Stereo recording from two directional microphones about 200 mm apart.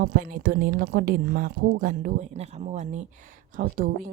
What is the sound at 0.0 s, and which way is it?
A woman's voice, 45° right (ahead or behind).